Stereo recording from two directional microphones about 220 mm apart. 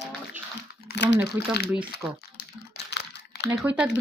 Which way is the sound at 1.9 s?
45° left (ahead or behind).